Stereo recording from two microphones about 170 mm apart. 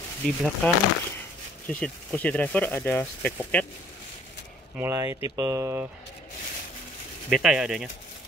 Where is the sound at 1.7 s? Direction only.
5° left (ahead or behind).